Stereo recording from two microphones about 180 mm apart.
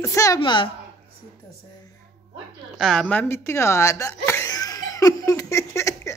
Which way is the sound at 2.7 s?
Centre (ahead or behind).